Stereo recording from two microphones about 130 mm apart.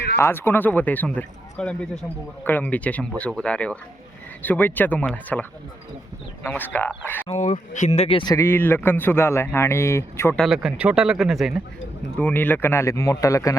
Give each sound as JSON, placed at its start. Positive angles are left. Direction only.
{"t": 0.2, "sound": "speech", "side_deg": 15}
{"t": 7.3, "sound": "speech", "side_deg": 55}
{"t": 8.4, "sound": "speech", "side_deg": 15}
{"t": 10.3, "sound": "speech", "side_deg": 0}
{"t": 12.1, "sound": "speech", "side_deg": 15}